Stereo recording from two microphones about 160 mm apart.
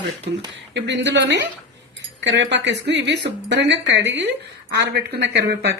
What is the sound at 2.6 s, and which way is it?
Speech, 90° right.